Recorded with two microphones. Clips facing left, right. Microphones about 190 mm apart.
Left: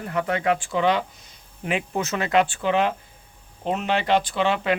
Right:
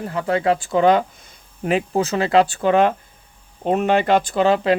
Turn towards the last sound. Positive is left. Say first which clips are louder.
# right 6 dB
turn(degrees=-40)  # may be behind; listen again after turning